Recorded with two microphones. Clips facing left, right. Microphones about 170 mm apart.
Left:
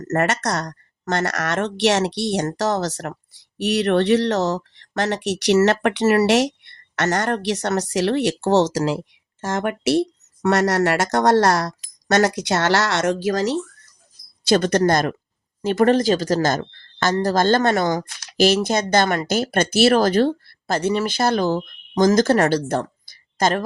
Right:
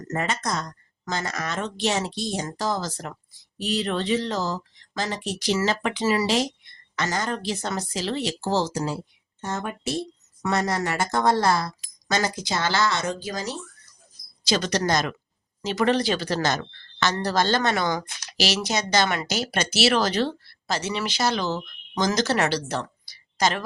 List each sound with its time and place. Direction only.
0.0 s speech: 70° left (ahead or behind)
14.4 s speech: 55° left (ahead or behind)